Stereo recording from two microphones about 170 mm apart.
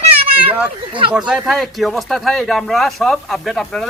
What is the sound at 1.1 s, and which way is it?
Speech, 5° right (ahead or behind).